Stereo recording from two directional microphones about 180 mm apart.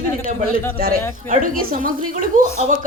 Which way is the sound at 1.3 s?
50° right (ahead or behind).